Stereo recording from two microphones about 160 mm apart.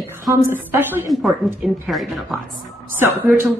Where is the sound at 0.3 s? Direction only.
10° right (ahead or behind).